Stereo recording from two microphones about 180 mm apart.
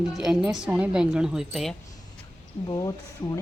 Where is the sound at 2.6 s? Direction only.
25° left (ahead or behind).